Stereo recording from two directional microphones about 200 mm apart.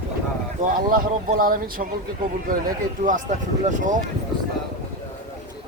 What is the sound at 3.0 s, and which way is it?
Speech, 40° right (ahead or behind).